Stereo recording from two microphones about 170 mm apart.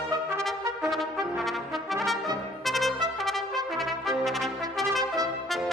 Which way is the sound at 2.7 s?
Centre (ahead or behind).